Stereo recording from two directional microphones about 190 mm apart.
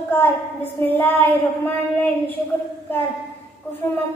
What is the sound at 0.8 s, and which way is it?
Speech, 10° left (ahead or behind).